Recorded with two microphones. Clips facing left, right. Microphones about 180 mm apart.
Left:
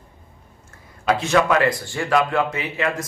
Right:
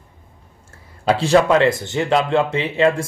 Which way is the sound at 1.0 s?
30° right (ahead or behind).